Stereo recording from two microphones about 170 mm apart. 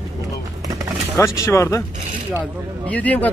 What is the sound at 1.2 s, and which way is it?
Speech, 15° left (ahead or behind).